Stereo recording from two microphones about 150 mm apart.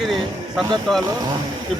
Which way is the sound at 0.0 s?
Centre (ahead or behind).